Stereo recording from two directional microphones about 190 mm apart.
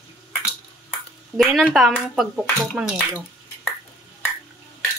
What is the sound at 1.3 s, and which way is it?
Speech, centre (ahead or behind).